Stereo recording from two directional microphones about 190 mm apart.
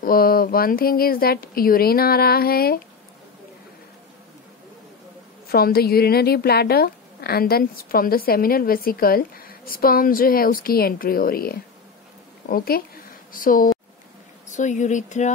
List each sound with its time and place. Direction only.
0.0 s a woman's voice: 50° left (ahead or behind)
5.5 s a woman's voice: 55° left (ahead or behind)